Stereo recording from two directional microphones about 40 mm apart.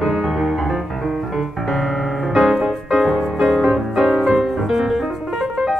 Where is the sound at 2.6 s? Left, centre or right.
Centre.